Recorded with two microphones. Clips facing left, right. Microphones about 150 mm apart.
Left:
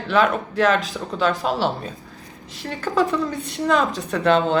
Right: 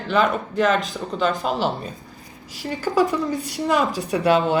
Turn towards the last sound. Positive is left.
turn(degrees=-5)  # may be behind; listen again after turning